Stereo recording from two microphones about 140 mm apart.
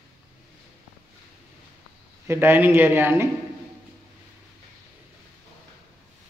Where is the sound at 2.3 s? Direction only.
15° right (ahead or behind).